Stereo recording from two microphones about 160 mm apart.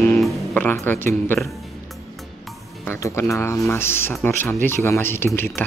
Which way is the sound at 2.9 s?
20° left (ahead or behind).